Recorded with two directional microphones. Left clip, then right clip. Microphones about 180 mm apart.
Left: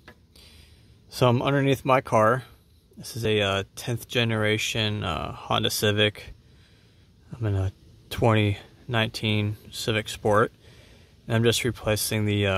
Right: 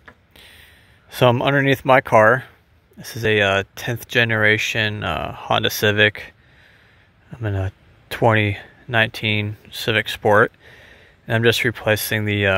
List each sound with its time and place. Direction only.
0.4 s a sound: 15° right (ahead or behind)
1.1 s speech: 15° right (ahead or behind)
7.4 s speech: 10° right (ahead or behind)